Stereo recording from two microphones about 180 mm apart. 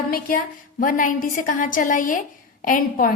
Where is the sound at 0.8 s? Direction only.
50° left (ahead or behind).